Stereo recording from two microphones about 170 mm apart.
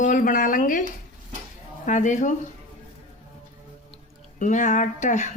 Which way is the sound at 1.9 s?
45° left (ahead or behind).